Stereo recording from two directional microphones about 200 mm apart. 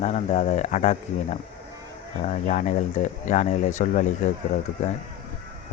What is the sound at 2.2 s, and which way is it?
Speech, 35° left (ahead or behind).